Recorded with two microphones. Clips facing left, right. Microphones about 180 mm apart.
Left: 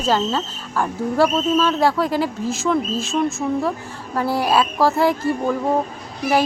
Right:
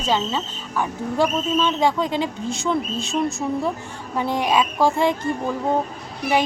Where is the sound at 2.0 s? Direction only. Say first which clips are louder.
Left 3 dB; 20° right (ahead or behind).